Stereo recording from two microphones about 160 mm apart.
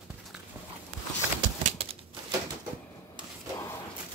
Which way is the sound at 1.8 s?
35° right (ahead or behind).